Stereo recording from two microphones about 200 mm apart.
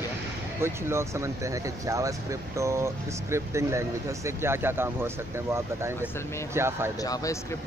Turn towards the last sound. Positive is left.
turn(degrees=15)  # may be behind; listen again after turning